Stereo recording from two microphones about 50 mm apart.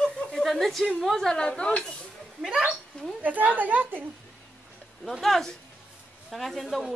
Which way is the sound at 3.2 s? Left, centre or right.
Right.